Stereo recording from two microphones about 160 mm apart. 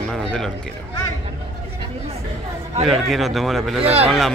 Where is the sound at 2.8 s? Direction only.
Centre (ahead or behind).